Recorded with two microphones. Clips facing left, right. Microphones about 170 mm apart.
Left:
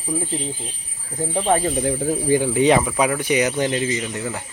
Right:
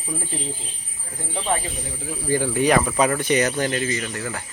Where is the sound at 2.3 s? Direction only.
15° left (ahead or behind).